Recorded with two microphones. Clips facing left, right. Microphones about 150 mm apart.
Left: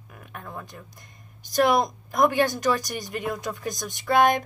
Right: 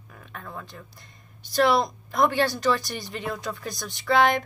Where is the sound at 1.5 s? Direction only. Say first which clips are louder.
Even; 15° left (ahead or behind).